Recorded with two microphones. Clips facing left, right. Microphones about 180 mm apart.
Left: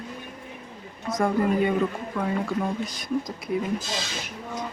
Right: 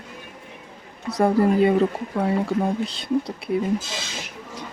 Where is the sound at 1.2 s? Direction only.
35° right (ahead or behind).